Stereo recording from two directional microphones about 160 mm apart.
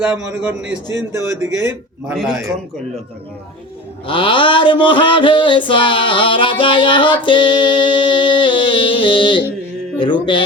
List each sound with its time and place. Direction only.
0.0 s a man's voice: 10° right (ahead or behind)
2.1 s a man's voice: centre (ahead or behind)
4.0 s a sound: 30° left (ahead or behind)